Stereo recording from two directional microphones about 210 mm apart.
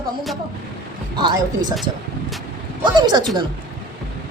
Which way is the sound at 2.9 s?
20° right (ahead or behind).